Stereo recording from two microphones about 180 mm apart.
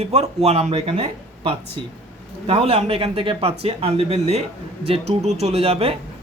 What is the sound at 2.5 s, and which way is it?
Speech, 35° right (ahead or behind).